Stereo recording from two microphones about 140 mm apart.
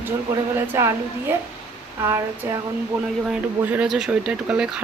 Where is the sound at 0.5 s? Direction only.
15° right (ahead or behind).